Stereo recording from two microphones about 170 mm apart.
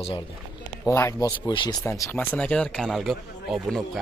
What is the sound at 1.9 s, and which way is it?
Speech, 15° left (ahead or behind).